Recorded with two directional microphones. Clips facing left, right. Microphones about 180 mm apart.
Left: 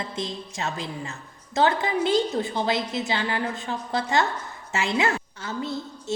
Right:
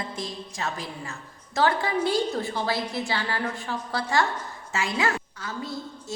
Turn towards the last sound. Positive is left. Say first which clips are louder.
# left 3 dB
turn(degrees=25)  # may be behind; listen again after turning